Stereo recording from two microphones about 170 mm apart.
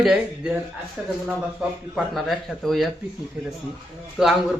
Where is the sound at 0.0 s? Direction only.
5° right (ahead or behind).